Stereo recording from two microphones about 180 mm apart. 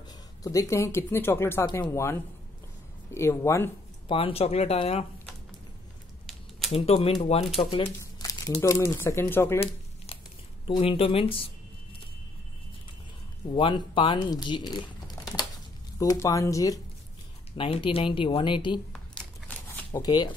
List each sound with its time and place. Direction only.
0.4 s speech: 20° left (ahead or behind)
3.2 s speech: 15° left (ahead or behind)
4.1 s speech: 30° left (ahead or behind)
6.7 s speech: 35° left (ahead or behind)
8.2 s speech: 20° left (ahead or behind)
10.7 s speech: 30° left (ahead or behind)
13.5 s speech: 30° left (ahead or behind)
17.6 s speech: 30° left (ahead or behind)
19.1 s a sound: 10° left (ahead or behind)
19.9 s speech: 20° left (ahead or behind)